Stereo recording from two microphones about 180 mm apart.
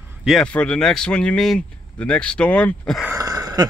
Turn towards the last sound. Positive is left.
turn(degrees=-20)  # may be behind; listen again after turning